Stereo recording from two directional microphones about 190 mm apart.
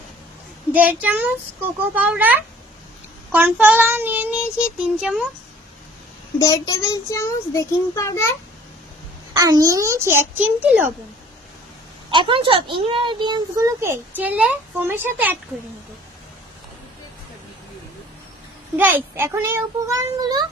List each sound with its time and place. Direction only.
0.7 s child singing: 10° right (ahead or behind)
6.4 s a child's voice: 15° left (ahead or behind)
9.3 s child singing: 20° right (ahead or behind)
12.1 s speech: 25° right (ahead or behind); by 15.4 s 10° right (ahead or behind)
18.8 s child singing: 10° right (ahead or behind)